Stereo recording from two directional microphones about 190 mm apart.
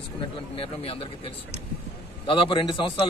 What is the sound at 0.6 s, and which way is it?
A man's voice, 30° left (ahead or behind).